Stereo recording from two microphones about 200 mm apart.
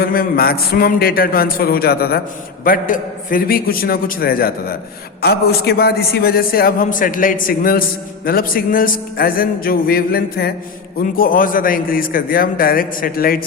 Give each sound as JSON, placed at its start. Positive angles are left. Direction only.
{"t": 0.0, "sound": "a man's voice", "side_deg": 45}